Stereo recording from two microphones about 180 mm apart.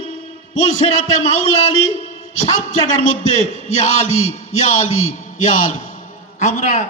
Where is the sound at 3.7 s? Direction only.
35° left (ahead or behind).